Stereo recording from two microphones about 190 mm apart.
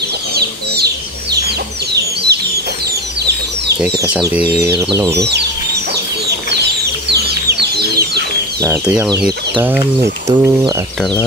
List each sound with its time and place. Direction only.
2.3 s bird: 55° right (ahead or behind)
4.6 s chicken: 15° right (ahead or behind)
6.5 s bird: 60° right (ahead or behind)
8.8 s chicken: 5° right (ahead or behind)
10.2 s speech: 20° right (ahead or behind)